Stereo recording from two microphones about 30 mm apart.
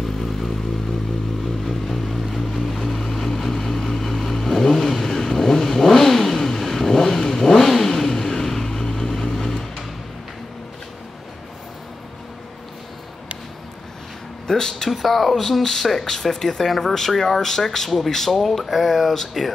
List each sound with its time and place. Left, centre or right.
0.0 s motorcycle: centre
1.4 s vehicle: centre
14.5 s speech: centre
14.9 s speech: centre